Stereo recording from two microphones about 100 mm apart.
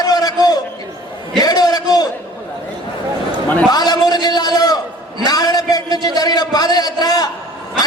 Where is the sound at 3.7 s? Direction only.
40° left (ahead or behind).